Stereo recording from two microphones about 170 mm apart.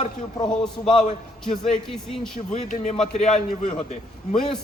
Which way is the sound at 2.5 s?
45° left (ahead or behind).